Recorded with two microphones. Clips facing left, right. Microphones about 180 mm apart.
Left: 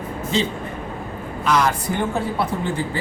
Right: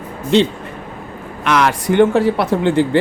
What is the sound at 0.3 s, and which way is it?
Speech, 70° right (ahead or behind).